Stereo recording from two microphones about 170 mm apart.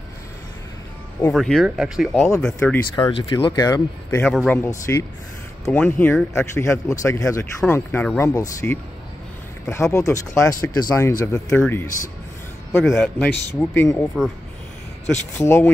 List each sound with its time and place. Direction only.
1.3 s speech: centre (ahead or behind)
3.0 s speech: 25° left (ahead or behind)
4.3 s speech: centre (ahead or behind)
4.6 s speech: 15° left (ahead or behind)
8.3 s speech: 20° left (ahead or behind)
12.8 s speech: centre (ahead or behind)
13.6 s speech: 15° left (ahead or behind)
14.2 s speech: 5° right (ahead or behind)
15.3 s speech: 15° left (ahead or behind)